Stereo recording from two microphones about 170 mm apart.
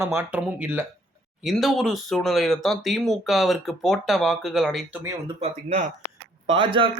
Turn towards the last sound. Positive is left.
turn(degrees=-30)  # may be behind; listen again after turning